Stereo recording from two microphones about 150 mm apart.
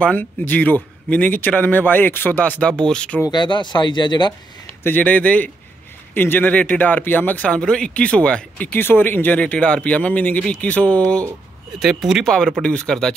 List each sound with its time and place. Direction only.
0.0 s speech: 10° left (ahead or behind)
3.2 s speech: 30° left (ahead or behind)
4.8 s speech: 10° left (ahead or behind)